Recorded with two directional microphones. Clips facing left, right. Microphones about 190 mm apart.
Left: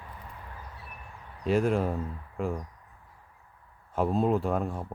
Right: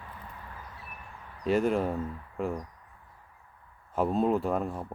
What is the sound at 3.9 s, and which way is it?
Speech, centre (ahead or behind).